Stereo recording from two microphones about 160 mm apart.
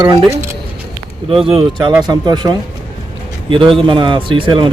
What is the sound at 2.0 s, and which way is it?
Speech, 25° right (ahead or behind).